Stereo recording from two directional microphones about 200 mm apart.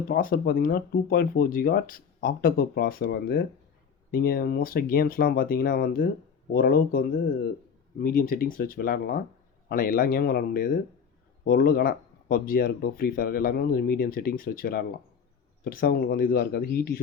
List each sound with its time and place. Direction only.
0.1 s speech: 45° left (ahead or behind)
8.0 s speech: 45° left (ahead or behind)